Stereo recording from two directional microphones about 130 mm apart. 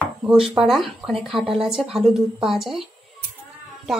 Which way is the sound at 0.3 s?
Centre (ahead or behind).